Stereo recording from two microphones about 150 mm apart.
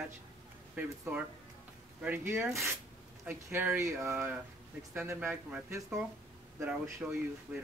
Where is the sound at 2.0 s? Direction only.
15° right (ahead or behind).